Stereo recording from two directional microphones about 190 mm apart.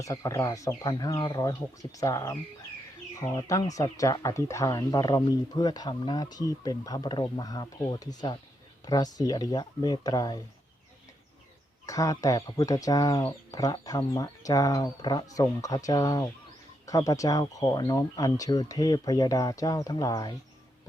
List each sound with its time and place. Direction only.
0.0 s speech: 15° left (ahead or behind)
11.9 s speech: 20° left (ahead or behind)